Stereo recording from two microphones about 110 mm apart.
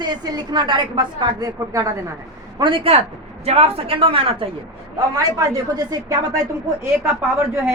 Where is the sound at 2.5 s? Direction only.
50° right (ahead or behind).